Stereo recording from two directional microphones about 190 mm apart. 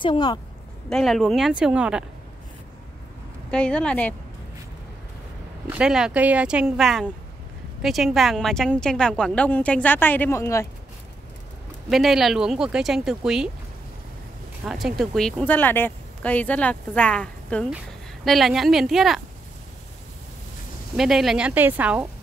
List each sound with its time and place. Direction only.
0.0 s a woman's voice: 25° left (ahead or behind)
0.8 s a woman's voice: centre (ahead or behind)
3.4 s a woman's voice: 5° left (ahead or behind)
5.7 s a woman's voice: 5° right (ahead or behind); by 10.7 s 15° left (ahead or behind)
11.9 s a woman's voice: centre (ahead or behind)
14.6 s a woman's voice: 5° right (ahead or behind)
20.9 s a woman's voice: centre (ahead or behind)